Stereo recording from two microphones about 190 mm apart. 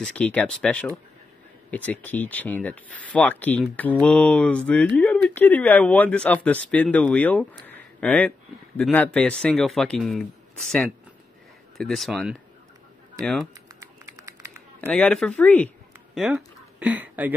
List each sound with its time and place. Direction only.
0.0 s speech: 5° left (ahead or behind)
13.7 s typing: 15° right (ahead or behind)
14.9 s speech: 5° left (ahead or behind)
16.2 s speech: 5° right (ahead or behind)